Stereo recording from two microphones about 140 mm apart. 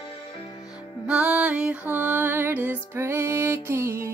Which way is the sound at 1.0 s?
10° right (ahead or behind).